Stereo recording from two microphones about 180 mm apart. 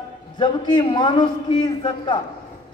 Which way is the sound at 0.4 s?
25° left (ahead or behind).